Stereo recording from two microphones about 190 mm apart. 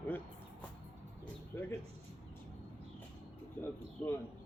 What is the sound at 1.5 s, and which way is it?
Speech, 10° left (ahead or behind).